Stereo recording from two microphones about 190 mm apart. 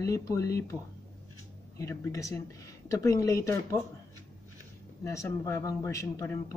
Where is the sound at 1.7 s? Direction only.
15° left (ahead or behind).